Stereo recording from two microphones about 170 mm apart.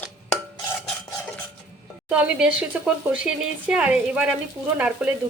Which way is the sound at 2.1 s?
5° right (ahead or behind).